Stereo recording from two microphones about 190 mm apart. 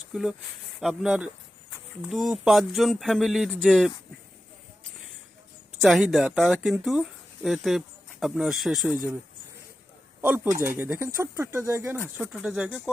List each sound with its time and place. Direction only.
0.1 s speech: 5° right (ahead or behind)
5.8 s speech: centre (ahead or behind)
10.2 s speech: 10° right (ahead or behind)